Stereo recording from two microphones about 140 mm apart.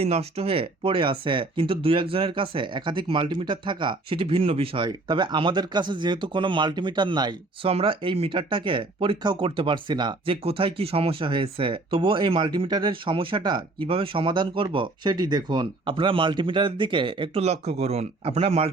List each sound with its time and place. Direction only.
0.0 s speech: 50° right (ahead or behind)
17.4 s speech: 50° right (ahead or behind)